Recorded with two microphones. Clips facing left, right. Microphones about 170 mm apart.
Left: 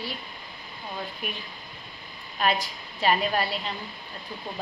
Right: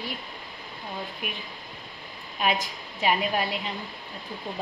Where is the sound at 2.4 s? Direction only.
15° right (ahead or behind).